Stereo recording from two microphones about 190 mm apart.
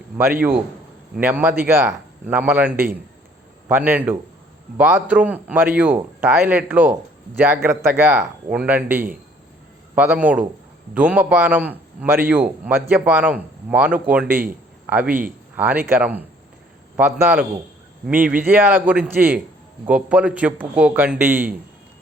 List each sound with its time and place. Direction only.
0.2 s a man's voice: 10° right (ahead or behind)